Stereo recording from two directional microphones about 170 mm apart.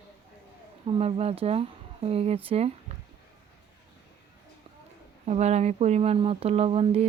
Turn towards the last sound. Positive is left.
turn(degrees=-35)  # may be behind; listen again after turning